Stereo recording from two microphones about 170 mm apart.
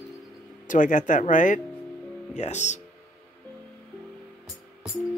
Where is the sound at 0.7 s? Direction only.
50° left (ahead or behind).